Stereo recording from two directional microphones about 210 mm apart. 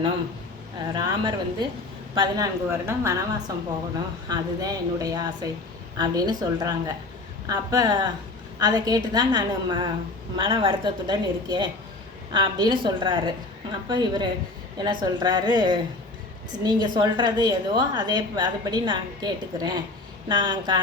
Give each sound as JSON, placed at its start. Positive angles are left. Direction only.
{"t": 0.9, "sound": "a woman's voice", "side_deg": -20}
{"t": 4.3, "sound": "a woman's voice", "side_deg": -15}